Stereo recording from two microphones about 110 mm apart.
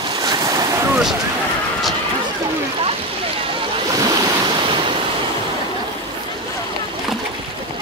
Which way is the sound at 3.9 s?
35° right (ahead or behind).